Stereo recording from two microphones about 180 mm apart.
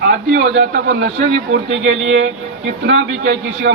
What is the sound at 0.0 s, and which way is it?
A man's voice, 75° right (ahead or behind).